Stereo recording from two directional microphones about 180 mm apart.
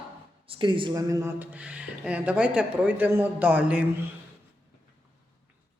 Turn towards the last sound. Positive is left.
turn(degrees=-10)  # may be behind; listen again after turning